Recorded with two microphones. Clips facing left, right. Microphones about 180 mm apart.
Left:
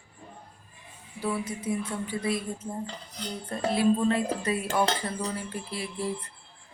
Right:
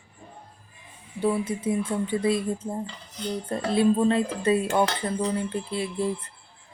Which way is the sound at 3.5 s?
25° right (ahead or behind).